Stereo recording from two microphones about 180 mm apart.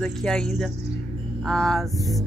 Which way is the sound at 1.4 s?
Centre (ahead or behind).